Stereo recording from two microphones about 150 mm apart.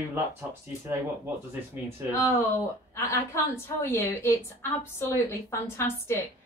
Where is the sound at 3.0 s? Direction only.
20° left (ahead or behind).